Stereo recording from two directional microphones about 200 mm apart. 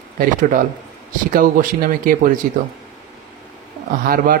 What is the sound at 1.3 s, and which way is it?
Speech, 45° right (ahead or behind).